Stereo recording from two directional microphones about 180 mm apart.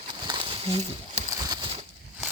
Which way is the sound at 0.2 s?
25° right (ahead or behind).